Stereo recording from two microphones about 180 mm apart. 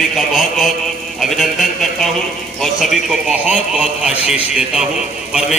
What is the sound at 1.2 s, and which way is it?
A man's voice, centre (ahead or behind).